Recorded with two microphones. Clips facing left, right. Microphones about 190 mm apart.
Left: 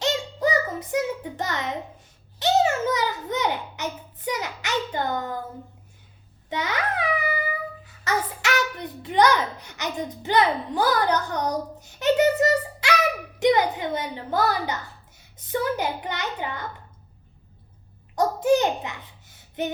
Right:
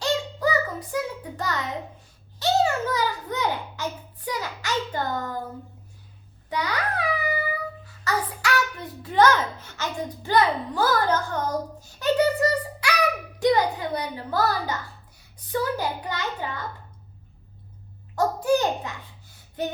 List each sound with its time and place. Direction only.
0.0 s child singing: 20° left (ahead or behind)
2.4 s a sound: 20° left (ahead or behind)
6.5 s babbling: 20° left (ahead or behind)
7.9 s a sound: 20° left (ahead or behind)
13.4 s a child's voice: 20° left (ahead or behind)
18.1 s a child's voice: 20° left (ahead or behind)